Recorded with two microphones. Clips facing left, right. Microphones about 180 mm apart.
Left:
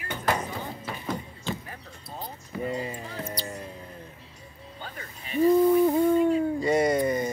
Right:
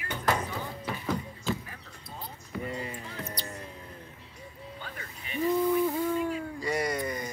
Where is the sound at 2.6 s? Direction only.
30° left (ahead or behind).